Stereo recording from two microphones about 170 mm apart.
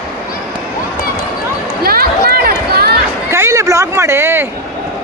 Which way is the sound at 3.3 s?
15° right (ahead or behind).